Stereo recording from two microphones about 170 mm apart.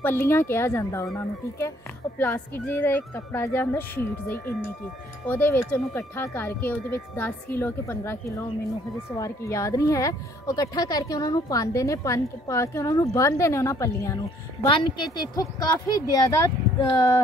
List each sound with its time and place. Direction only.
0.0 s speech: 15° left (ahead or behind)
2.1 s a woman's voice: 10° left (ahead or behind)
14.7 s a woman's voice: 25° left (ahead or behind)
16.6 s a sound: centre (ahead or behind)